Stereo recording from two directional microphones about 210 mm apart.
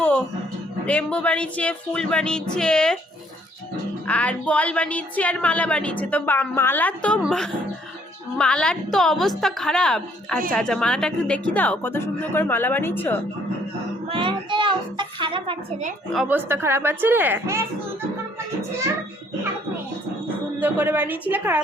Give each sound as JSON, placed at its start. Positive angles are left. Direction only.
{"t": 0.9, "sound": "speech", "side_deg": 5}
{"t": 4.0, "sound": "speech", "side_deg": 5}
{"t": 14.1, "sound": "a child's voice", "side_deg": -25}
{"t": 16.1, "sound": "a woman's voice", "side_deg": -5}
{"t": 20.6, "sound": "a woman's voice", "side_deg": -10}